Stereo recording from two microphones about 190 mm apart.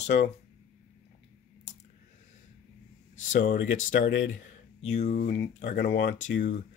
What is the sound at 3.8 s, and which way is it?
Speech, 45° left (ahead or behind).